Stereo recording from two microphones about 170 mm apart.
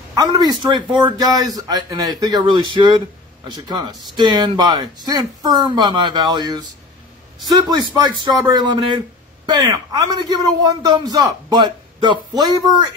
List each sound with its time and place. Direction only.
0.1 s a man's voice: 25° right (ahead or behind)